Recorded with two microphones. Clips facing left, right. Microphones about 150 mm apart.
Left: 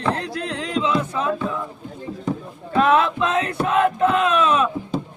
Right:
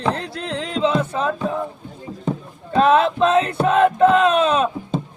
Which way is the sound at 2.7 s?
30° right (ahead or behind).